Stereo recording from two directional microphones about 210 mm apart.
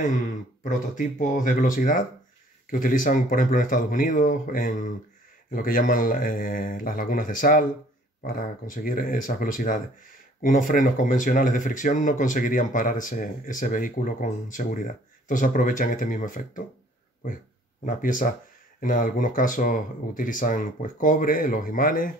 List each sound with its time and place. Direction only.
0.7 s speech: 40° left (ahead or behind)
17.8 s speech: 40° left (ahead or behind)